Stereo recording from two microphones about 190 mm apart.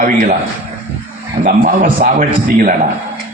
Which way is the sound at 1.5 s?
45° right (ahead or behind).